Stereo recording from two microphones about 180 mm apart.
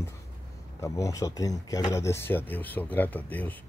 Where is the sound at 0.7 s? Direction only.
15° left (ahead or behind).